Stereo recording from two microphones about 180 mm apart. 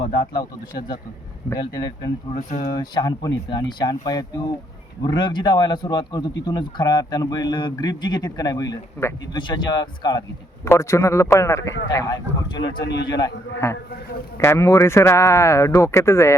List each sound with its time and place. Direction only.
0.0 s speech: 55° left (ahead or behind)
2.3 s speech: 40° left (ahead or behind)
2.7 s a man's voice: 20° left (ahead or behind)
12.5 s speech: 80° left
13.1 s a man's voice: 20° left (ahead or behind)